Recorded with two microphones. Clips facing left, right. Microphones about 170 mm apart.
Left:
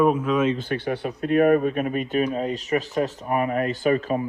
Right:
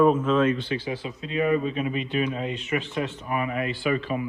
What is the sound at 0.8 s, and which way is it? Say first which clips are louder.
Speech: left 6 dB; 65° left (ahead or behind).